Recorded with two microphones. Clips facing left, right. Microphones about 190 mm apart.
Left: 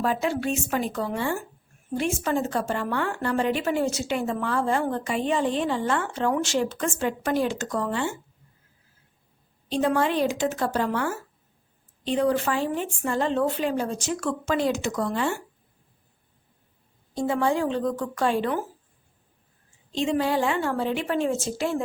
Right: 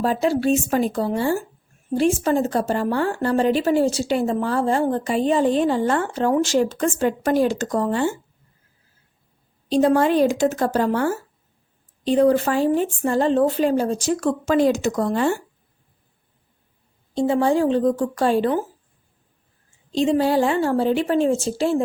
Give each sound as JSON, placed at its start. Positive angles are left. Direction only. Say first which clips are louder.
{"t": 0.0, "sound": "a woman's voice", "louder": "right 6 dB", "side_deg": -35}
{"t": 9.6, "sound": "a woman's voice", "louder": "right 6 dB", "side_deg": -35}
{"t": 17.2, "sound": "a woman's voice", "louder": "right 6 dB", "side_deg": -25}
{"t": 19.9, "sound": "a woman's voice", "louder": "right 6 dB", "side_deg": -35}